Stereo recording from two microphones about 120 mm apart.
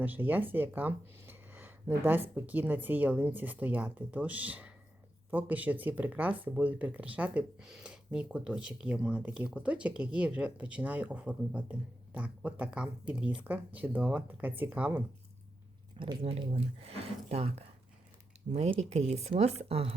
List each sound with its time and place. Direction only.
0.0 s speech: 15° right (ahead or behind)
16.2 s speech: 60° right (ahead or behind)